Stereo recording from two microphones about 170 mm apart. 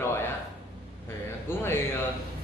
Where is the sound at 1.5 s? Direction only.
15° left (ahead or behind).